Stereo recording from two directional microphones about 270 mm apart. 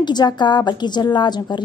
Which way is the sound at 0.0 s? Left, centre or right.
Centre.